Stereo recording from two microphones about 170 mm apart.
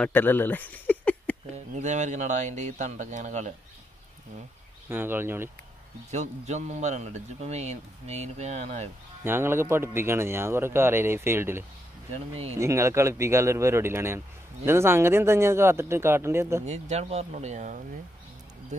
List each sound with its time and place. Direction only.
0.0 s speech: 10° left (ahead or behind)
1.8 s speech: 45° right (ahead or behind)
4.8 s speech: 10° right (ahead or behind)
6.1 s a man's voice: 40° right (ahead or behind)
9.2 s speech: 15° right (ahead or behind)
12.1 s a man's voice: 40° right (ahead or behind)
12.5 s speech: 15° right (ahead or behind)
16.6 s speech: 40° right (ahead or behind)